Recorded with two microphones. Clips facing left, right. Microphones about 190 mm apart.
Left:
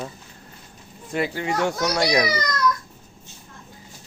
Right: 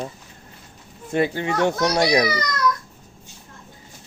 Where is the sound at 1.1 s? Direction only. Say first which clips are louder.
Right 3 dB; 25° right (ahead or behind).